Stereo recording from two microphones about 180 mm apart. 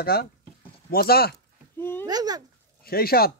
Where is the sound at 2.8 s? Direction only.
55° left (ahead or behind).